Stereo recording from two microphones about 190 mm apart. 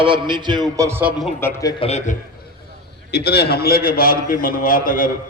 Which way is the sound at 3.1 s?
60° left (ahead or behind).